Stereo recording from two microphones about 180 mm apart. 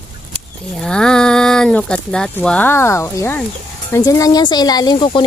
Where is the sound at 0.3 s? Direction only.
5° left (ahead or behind).